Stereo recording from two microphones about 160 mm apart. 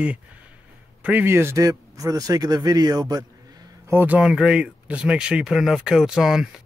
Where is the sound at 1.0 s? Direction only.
10° right (ahead or behind).